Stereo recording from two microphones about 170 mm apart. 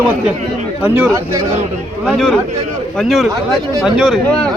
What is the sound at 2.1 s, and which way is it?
Speech, 5° left (ahead or behind).